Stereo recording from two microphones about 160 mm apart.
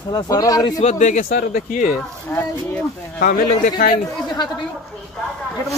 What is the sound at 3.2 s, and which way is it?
Speech, 60° left (ahead or behind).